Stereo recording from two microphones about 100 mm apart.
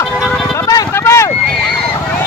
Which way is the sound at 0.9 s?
25° left (ahead or behind).